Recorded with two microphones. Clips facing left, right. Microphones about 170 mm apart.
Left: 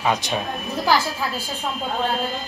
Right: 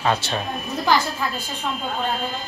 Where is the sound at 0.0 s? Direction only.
15° left (ahead or behind).